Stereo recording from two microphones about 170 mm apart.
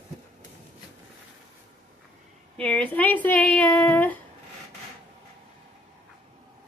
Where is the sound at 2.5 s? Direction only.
5° left (ahead or behind).